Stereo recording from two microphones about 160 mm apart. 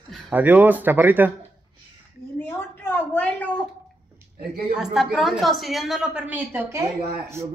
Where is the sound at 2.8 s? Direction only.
10° left (ahead or behind).